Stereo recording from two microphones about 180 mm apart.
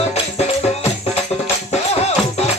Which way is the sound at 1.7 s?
35° left (ahead or behind).